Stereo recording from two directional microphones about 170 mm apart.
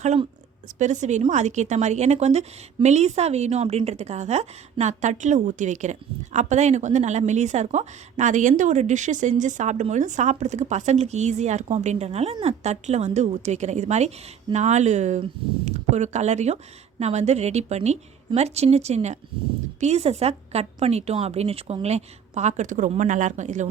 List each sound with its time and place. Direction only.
0.0 s a woman's voice: 40° right (ahead or behind)